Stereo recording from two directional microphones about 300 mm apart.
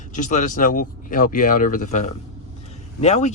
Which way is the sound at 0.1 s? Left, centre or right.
Left.